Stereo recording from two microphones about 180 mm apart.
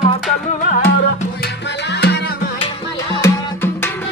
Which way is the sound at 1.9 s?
65° left (ahead or behind).